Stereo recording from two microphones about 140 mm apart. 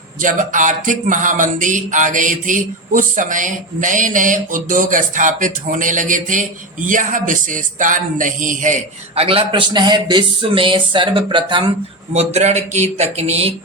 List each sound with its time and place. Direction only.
0.2 s a sound: 70° right (ahead or behind)
9.1 s speech: 40° right (ahead or behind)
12.1 s speech: 50° right (ahead or behind)